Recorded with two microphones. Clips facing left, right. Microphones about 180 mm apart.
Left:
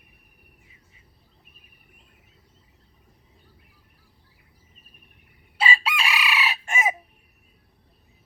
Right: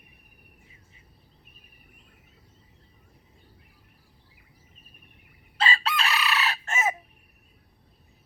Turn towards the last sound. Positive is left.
turn(degrees=10)  # may be behind; listen again after turning